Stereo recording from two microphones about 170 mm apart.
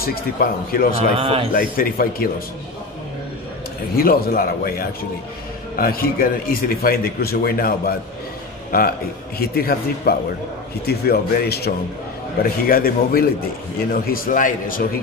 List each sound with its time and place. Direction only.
0.0 s speech: 60° left (ahead or behind)
0.9 s speech: 35° right (ahead or behind)
1.5 s speech: 55° left (ahead or behind)
3.9 s speech: 60° left (ahead or behind)